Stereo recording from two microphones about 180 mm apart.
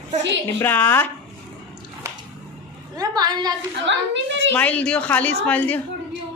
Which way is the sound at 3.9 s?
85° right.